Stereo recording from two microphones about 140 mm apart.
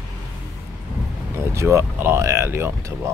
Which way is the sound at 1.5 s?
20° right (ahead or behind).